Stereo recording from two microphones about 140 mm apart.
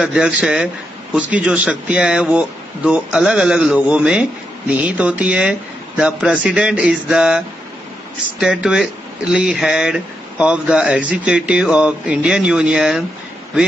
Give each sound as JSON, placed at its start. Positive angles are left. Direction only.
{"t": 0.0, "sound": "speech", "side_deg": -5}